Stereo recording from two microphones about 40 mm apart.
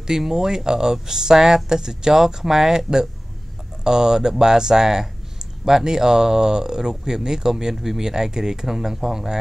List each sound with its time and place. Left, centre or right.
0.0 s speech: centre